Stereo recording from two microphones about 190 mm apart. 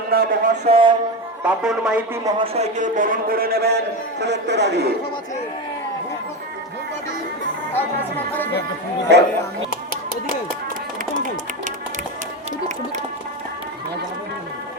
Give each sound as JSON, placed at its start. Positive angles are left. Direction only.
{"t": 0.1, "sound": "a man's voice", "side_deg": -50}
{"t": 0.7, "sound": "speech", "side_deg": -25}
{"t": 1.5, "sound": "speech", "side_deg": -5}
{"t": 2.2, "sound": "a man's voice", "side_deg": -30}
{"t": 9.1, "sound": "speech", "side_deg": -65}